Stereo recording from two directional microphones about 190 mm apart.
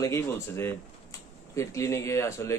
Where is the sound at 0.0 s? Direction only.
15° left (ahead or behind).